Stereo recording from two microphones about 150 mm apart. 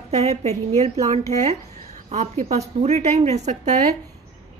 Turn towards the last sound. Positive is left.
turn(degrees=-50)  # may be behind; listen again after turning